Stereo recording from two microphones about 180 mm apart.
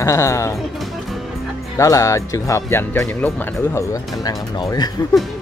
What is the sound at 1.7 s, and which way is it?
Speech, 20° left (ahead or behind).